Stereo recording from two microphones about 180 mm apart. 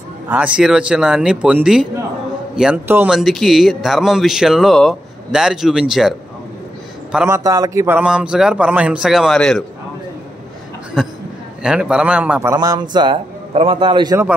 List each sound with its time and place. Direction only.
0.3 s a man's voice: 5° right (ahead or behind)
7.2 s a man's voice: 15° right (ahead or behind); by 9.7 s 5° left (ahead or behind)
11.0 s a man's voice: centre (ahead or behind)
12.5 s a man's voice: 25° right (ahead or behind)